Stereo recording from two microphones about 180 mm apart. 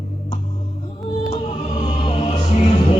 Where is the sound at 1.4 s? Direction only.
35° left (ahead or behind).